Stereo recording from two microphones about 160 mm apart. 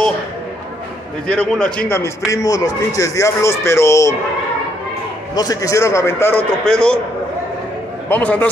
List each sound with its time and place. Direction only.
1.2 s a man's voice: 5° left (ahead or behind)
5.3 s a man's voice: 25° left (ahead or behind)
6.6 s a man's voice: 5° left (ahead or behind)
8.1 s a man's voice: 10° left (ahead or behind)